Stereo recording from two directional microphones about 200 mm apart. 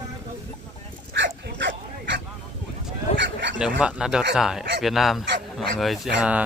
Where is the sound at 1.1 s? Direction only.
60° right (ahead or behind).